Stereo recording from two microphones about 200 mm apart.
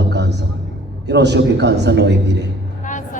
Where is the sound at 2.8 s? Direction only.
40° left (ahead or behind).